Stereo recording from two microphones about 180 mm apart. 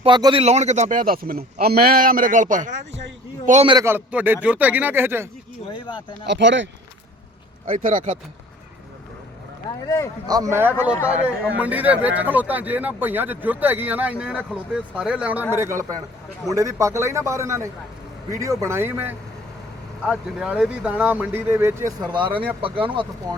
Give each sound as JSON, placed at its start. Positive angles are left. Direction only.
{"t": 0.0, "sound": "a man's voice", "side_deg": -25}
{"t": 3.8, "sound": "speech", "side_deg": -10}
{"t": 5.7, "sound": "speech", "side_deg": 25}
{"t": 6.2, "sound": "speech", "side_deg": -80}
{"t": 7.7, "sound": "speech", "side_deg": -50}
{"t": 9.6, "sound": "speech", "side_deg": 20}
{"t": 10.2, "sound": "speech", "side_deg": -20}